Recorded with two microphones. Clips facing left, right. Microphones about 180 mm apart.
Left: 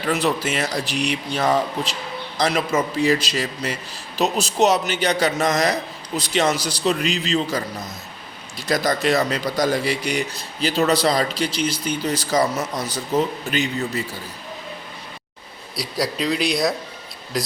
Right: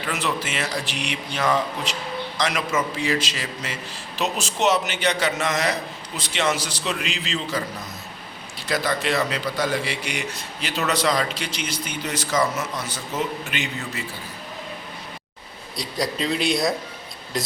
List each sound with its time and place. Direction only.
0.1 s a man's voice: 40° left (ahead or behind)
15.7 s speech: 5° left (ahead or behind)